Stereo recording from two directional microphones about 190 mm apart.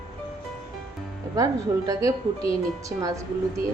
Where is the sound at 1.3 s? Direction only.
15° right (ahead or behind).